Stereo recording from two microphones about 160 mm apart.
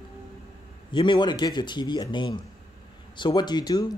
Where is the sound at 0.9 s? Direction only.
30° left (ahead or behind).